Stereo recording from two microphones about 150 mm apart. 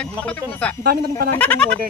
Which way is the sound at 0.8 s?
90° right.